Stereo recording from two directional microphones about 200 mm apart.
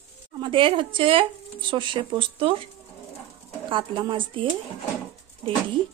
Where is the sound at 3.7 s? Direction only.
25° right (ahead or behind).